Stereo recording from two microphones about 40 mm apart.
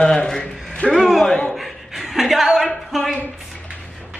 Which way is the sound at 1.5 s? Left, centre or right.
Centre.